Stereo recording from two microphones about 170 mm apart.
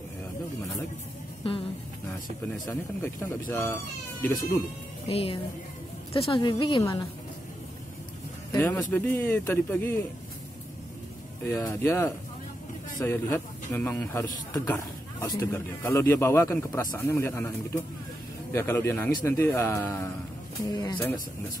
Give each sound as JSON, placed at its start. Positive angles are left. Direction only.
{"t": 2.6, "sound": "a man's voice", "side_deg": 15}
{"t": 5.0, "sound": "a woman's voice", "side_deg": 35}
{"t": 8.5, "sound": "a man's voice", "side_deg": 10}
{"t": 11.4, "sound": "a man's voice", "side_deg": 15}